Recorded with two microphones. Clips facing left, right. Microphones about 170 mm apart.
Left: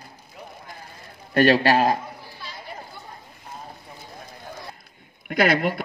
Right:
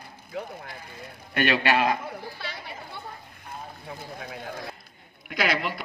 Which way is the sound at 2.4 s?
75° right (ahead or behind).